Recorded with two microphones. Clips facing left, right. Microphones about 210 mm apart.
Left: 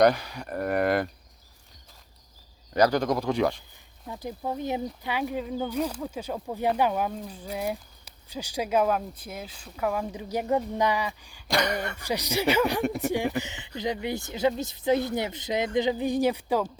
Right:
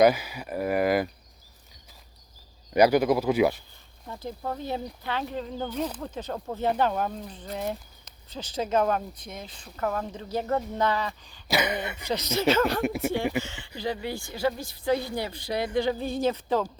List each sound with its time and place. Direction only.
0.0 s speech: 5° right (ahead or behind)
2.7 s speech: 10° right (ahead or behind)
4.2 s speech: 15° left (ahead or behind)
11.4 s speech: 5° right (ahead or behind)
12.0 s speech: 15° left (ahead or behind)
12.8 s speech: centre (ahead or behind)
13.4 s speech: 20° left (ahead or behind)